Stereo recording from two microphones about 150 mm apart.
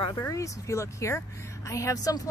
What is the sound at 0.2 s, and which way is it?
Speech, 20° left (ahead or behind).